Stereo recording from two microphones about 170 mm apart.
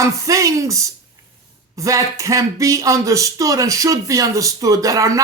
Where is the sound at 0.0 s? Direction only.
20° right (ahead or behind).